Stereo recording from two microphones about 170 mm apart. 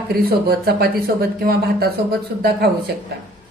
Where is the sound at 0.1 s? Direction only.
65° right (ahead or behind).